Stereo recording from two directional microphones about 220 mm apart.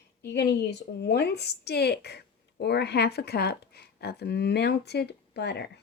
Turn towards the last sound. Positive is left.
turn(degrees=50)  # may be behind; listen again after turning